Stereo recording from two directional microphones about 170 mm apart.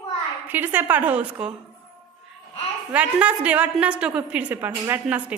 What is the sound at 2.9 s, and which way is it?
A woman's voice, 5° right (ahead or behind).